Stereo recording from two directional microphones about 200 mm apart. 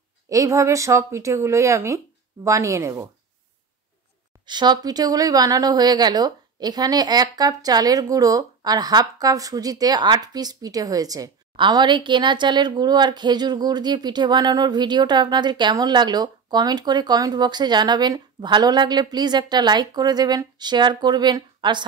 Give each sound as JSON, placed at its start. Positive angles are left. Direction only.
{"t": 0.3, "sound": "speech", "side_deg": -15}
{"t": 4.5, "sound": "a woman's voice", "side_deg": -20}